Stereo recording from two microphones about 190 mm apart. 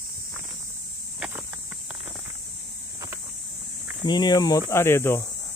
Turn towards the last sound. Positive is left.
turn(degrees=15)  # may be behind; listen again after turning